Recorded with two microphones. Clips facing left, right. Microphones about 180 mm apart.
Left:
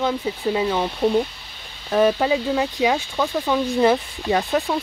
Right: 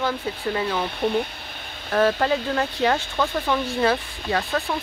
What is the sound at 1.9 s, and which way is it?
Speech, 10° left (ahead or behind).